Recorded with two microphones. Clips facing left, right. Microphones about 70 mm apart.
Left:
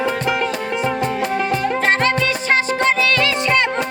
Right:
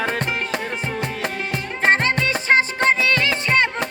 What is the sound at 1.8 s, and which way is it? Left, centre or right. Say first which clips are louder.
Music: right 3 dB; right.